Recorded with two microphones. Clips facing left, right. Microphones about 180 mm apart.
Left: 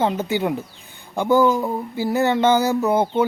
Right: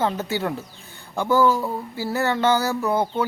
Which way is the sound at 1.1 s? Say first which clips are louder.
Left 2 dB; 15° left (ahead or behind).